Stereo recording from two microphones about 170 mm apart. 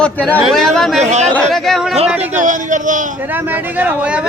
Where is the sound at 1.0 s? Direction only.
40° right (ahead or behind).